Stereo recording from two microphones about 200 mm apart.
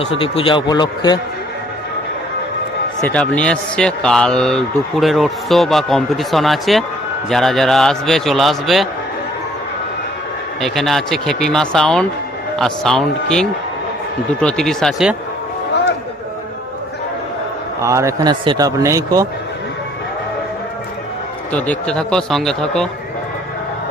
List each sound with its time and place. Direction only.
0.2 s a man's voice: 25° left (ahead or behind)
3.1 s a man's voice: 5° left (ahead or behind)
10.6 s a man's voice: centre (ahead or behind)
17.8 s a man's voice: 15° right (ahead or behind)
21.5 s a man's voice: 5° left (ahead or behind)